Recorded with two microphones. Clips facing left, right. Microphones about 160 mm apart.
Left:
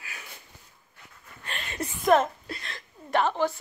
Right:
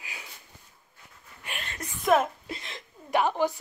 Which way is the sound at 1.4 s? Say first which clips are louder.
Left 4 dB; 10° right (ahead or behind).